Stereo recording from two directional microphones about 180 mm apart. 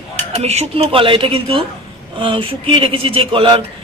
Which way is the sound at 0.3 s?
35° right (ahead or behind).